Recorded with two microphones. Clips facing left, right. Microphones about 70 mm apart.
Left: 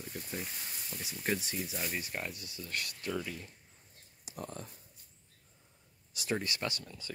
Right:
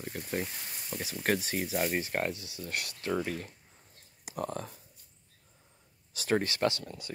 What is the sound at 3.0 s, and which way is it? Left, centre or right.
Speech, right.